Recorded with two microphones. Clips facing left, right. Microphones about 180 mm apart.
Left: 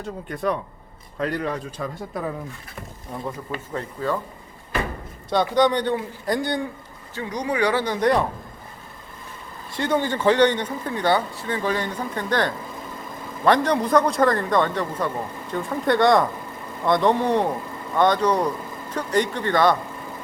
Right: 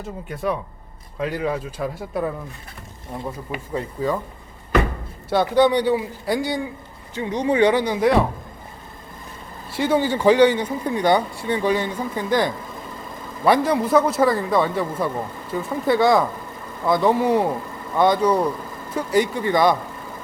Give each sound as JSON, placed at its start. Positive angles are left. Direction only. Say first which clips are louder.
{"t": 0.0, "sound": "a man's voice", "louder": "even", "side_deg": -5}
{"t": 3.2, "sound": "a man's voice", "louder": "even", "side_deg": -10}
{"t": 5.3, "sound": "speech", "louder": "right 2 dB", "side_deg": -5}
{"t": 7.2, "sound": "speech", "louder": "right 5 dB", "side_deg": -25}
{"t": 9.6, "sound": "a man's voice", "louder": "right 3 dB", "side_deg": -10}